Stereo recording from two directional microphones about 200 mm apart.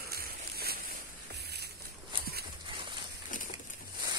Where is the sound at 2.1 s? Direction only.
25° right (ahead or behind).